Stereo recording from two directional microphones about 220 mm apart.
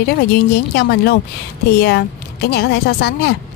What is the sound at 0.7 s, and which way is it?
Speech, 45° left (ahead or behind).